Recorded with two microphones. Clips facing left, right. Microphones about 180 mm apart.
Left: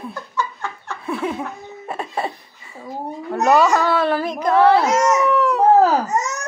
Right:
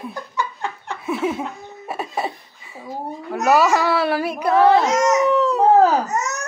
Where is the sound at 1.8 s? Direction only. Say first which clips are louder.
Even; 5° right (ahead or behind).